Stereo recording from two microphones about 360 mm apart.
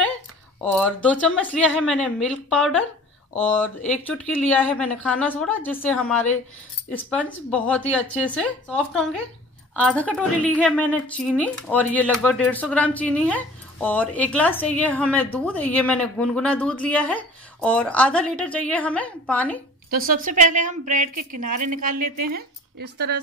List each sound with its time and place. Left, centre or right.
0.7 s speech: centre
19.9 s a woman's voice: right